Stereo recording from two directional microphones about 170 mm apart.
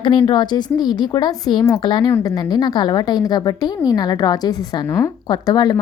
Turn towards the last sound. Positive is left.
turn(degrees=25)  # may be behind; listen again after turning